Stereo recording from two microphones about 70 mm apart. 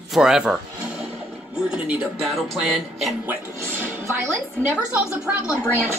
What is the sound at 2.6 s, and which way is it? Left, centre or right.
Speech, centre.